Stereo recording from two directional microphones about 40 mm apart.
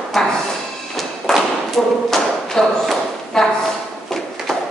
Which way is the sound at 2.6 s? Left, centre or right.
Centre.